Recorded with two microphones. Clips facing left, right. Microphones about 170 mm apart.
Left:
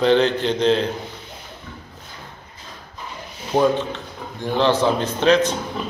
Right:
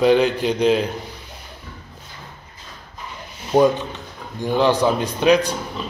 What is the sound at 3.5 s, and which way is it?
Speech, 10° right (ahead or behind).